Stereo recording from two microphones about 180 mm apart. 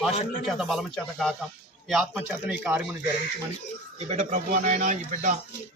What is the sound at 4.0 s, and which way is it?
Speech, 40° right (ahead or behind).